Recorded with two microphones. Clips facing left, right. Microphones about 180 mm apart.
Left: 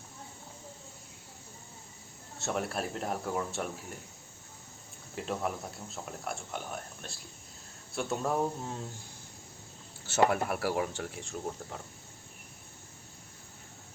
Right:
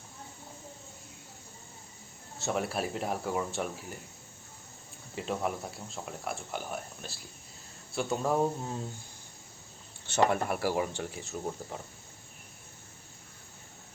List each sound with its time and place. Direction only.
2.4 s speech: centre (ahead or behind)
5.1 s speech: centre (ahead or behind)
10.1 s speech: 5° left (ahead or behind)